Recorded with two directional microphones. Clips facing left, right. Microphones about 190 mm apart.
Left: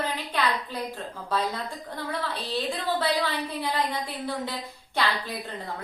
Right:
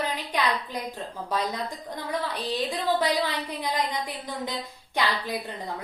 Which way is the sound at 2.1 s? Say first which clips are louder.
Right 3 dB; 15° right (ahead or behind).